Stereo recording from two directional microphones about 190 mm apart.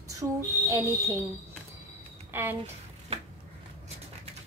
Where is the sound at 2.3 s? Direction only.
10° right (ahead or behind).